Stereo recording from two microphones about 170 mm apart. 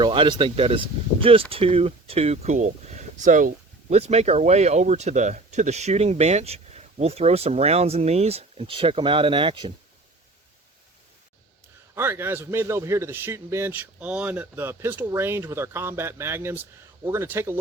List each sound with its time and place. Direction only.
0.0 s speech: 30° right (ahead or behind)
11.9 s a man's voice: 15° right (ahead or behind)